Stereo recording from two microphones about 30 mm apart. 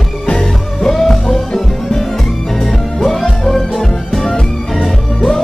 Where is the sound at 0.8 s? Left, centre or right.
Centre.